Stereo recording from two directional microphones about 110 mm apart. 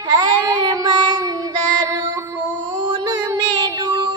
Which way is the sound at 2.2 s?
15° right (ahead or behind).